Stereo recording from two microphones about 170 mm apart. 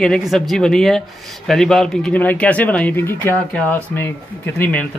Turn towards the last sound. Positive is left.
turn(degrees=10)  # may be behind; listen again after turning